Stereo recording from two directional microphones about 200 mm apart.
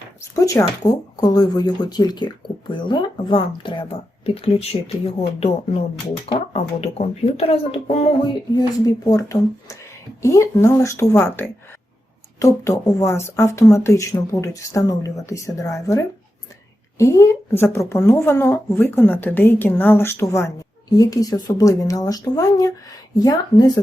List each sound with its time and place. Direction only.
0.2 s speech: 15° left (ahead or behind)
6.2 s speech: 30° left (ahead or behind)